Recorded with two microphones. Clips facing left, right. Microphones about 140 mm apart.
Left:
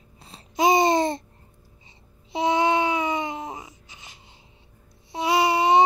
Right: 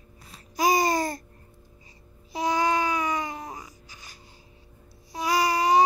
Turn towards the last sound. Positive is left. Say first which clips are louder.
# left 3 dB
turn(degrees=25)  # may be behind; listen again after turning